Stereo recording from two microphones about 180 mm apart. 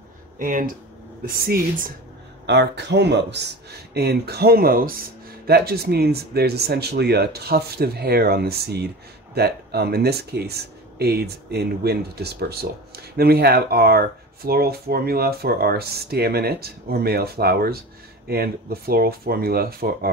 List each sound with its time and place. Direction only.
0.4 s speech: 45° right (ahead or behind)
2.4 s speech: 70° right (ahead or behind)